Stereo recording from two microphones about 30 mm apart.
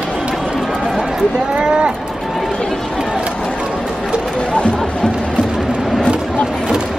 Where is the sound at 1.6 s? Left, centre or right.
Right.